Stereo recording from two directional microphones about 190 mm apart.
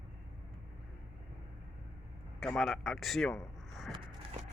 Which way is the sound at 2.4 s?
5° left (ahead or behind).